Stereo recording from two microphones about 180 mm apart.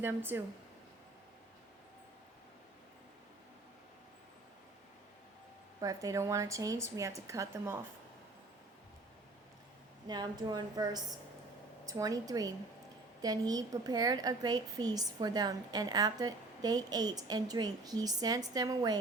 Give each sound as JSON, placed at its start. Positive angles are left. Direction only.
{"t": 0.0, "sound": "a woman's voice", "side_deg": -10}
{"t": 5.8, "sound": "a woman's voice", "side_deg": -20}
{"t": 10.1, "sound": "a woman's voice", "side_deg": -25}